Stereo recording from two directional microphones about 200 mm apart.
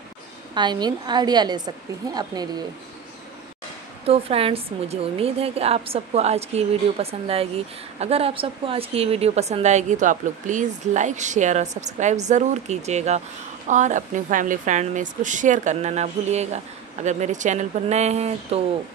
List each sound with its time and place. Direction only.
0.6 s a woman's voice: 20° right (ahead or behind)
4.0 s a woman's voice: 30° right (ahead or behind)